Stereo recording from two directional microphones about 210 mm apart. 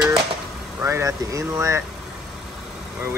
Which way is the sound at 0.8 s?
15° right (ahead or behind).